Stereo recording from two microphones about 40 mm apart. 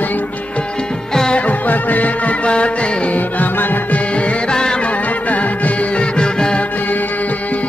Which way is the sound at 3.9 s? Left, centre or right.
Left.